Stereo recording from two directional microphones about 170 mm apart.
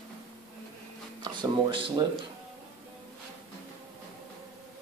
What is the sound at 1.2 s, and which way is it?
Speech, 25° right (ahead or behind).